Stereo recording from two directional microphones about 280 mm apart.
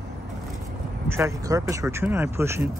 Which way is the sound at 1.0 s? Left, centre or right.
Centre.